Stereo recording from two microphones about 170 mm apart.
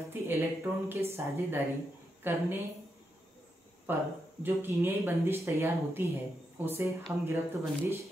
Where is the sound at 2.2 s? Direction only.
10° right (ahead or behind).